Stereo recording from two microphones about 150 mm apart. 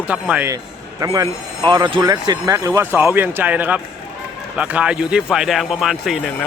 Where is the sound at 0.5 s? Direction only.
25° right (ahead or behind); by 6.3 s 5° right (ahead or behind).